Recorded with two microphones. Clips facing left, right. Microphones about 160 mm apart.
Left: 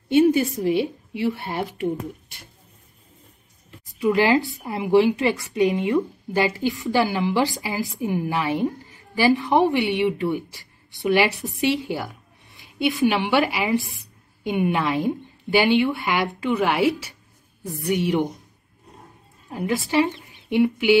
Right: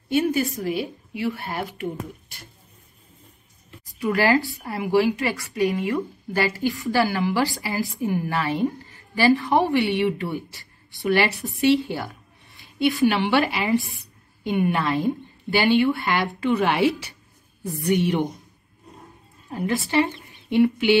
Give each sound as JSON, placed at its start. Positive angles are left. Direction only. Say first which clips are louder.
{"t": 0.3, "sound": "a woman's voice", "louder": "left 4 dB", "side_deg": 25}
{"t": 4.0, "sound": "a woman's voice", "louder": "left 2 dB", "side_deg": 20}
{"t": 19.5, "sound": "a woman's voice", "louder": "left 1 dB", "side_deg": 10}